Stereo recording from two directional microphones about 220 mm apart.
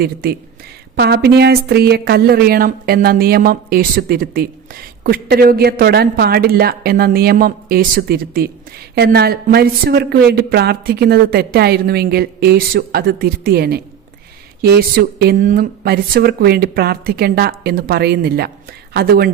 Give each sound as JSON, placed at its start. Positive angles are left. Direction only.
{"t": 0.0, "sound": "a woman's voice", "side_deg": -45}